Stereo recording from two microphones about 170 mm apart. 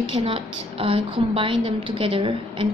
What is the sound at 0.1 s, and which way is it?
A woman's voice, 30° right (ahead or behind).